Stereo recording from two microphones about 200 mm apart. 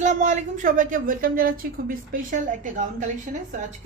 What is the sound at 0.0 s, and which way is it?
A woman's voice, 35° right (ahead or behind).